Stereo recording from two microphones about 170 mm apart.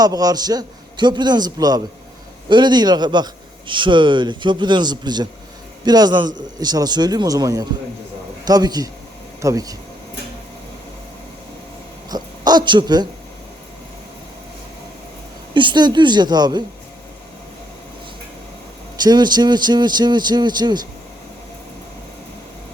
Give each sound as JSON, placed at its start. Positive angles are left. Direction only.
{"t": 0.0, "sound": "a man's voice", "side_deg": -20}
{"t": 12.0, "sound": "a sound", "side_deg": -25}
{"t": 15.5, "sound": "a man's voice", "side_deg": -25}
{"t": 19.0, "sound": "a man's voice", "side_deg": -25}